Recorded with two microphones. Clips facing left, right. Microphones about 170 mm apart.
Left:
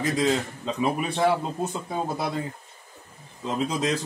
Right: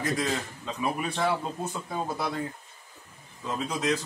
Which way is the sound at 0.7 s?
25° left (ahead or behind).